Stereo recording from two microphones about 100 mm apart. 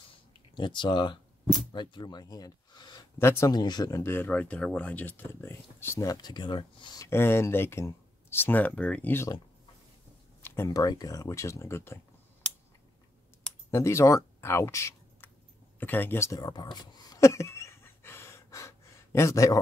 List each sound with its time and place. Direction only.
0.6 s speech: 50° left (ahead or behind)
3.2 s speech: 25° left (ahead or behind)
3.5 s speech: 45° left (ahead or behind)
4.0 s speech: 20° left (ahead or behind)
6.0 s speech: 45° left (ahead or behind)
7.1 s speech: 25° left (ahead or behind)
10.4 s a sound: 25° left (ahead or behind)
10.7 s speech: 40° left (ahead or behind)
13.7 s speech: 30° left (ahead or behind)
16.3 s a sound: 45° left (ahead or behind)